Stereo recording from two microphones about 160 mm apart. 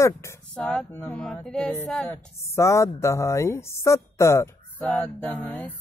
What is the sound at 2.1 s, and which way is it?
Speech, 15° left (ahead or behind).